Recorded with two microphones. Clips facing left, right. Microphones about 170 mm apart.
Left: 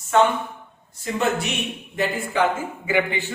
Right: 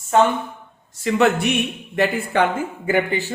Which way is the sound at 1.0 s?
65° right (ahead or behind).